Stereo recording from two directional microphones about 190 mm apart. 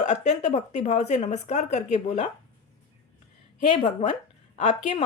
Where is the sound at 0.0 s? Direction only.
35° left (ahead or behind).